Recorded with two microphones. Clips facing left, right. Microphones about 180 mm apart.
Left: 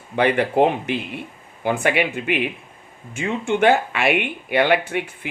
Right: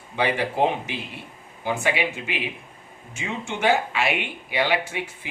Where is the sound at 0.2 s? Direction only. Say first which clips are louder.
Left 5 dB; 60° left (ahead or behind).